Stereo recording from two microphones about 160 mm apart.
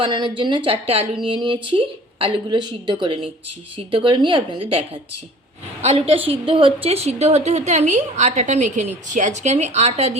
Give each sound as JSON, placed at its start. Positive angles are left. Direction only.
{"t": 0.0, "sound": "a woman's voice", "side_deg": -30}